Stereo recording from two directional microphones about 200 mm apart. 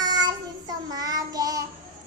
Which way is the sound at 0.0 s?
20° right (ahead or behind).